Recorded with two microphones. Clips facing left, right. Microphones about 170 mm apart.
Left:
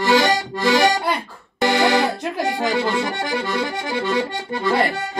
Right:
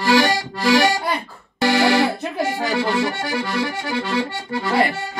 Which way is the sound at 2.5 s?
20° left (ahead or behind).